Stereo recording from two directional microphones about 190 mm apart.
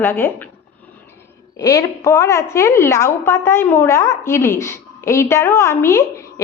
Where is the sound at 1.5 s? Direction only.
20° left (ahead or behind).